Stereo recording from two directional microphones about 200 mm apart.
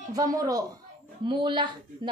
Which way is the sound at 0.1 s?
20° right (ahead or behind).